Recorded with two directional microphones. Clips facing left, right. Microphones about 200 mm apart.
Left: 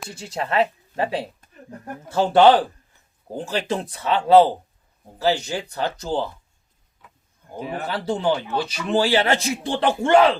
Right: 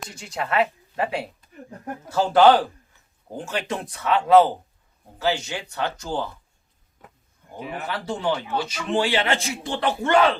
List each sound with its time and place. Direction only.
0.2 s a man's voice: 35° left (ahead or behind)
7.0 s a sound: 45° right (ahead or behind)
7.5 s a man's voice: 35° left (ahead or behind)